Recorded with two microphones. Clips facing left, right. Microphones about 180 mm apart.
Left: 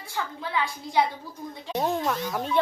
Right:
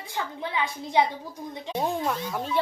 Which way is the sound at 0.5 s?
20° right (ahead or behind).